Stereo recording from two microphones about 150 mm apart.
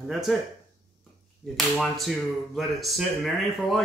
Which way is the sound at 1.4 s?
Centre (ahead or behind).